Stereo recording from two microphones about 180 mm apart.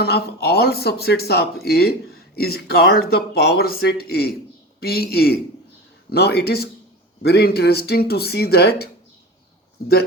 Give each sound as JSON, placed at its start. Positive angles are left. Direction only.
{"t": 0.0, "sound": "speech", "side_deg": 60}